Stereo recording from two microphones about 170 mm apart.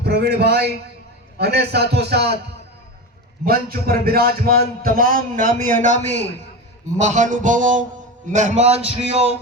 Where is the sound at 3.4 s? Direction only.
60° right (ahead or behind).